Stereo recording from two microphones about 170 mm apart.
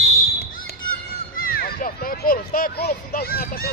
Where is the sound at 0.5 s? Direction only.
60° left (ahead or behind).